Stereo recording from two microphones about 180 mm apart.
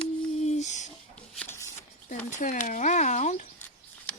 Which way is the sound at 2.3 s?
45° left (ahead or behind).